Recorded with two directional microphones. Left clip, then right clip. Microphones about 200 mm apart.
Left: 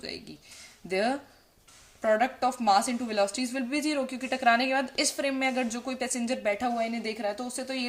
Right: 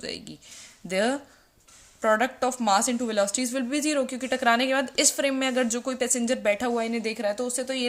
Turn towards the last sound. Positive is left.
turn(degrees=-40)  # may be behind; listen again after turning